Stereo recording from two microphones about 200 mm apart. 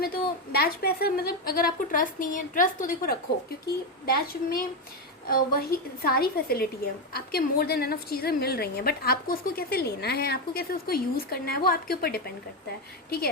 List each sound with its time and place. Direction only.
0.5 s a woman's voice: 50° left (ahead or behind)